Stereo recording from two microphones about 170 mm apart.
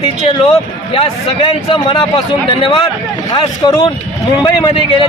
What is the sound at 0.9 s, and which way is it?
A man's voice, 30° left (ahead or behind).